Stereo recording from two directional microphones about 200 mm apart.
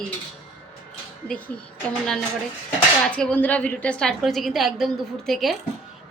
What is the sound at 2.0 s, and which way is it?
A woman's voice, 5° left (ahead or behind).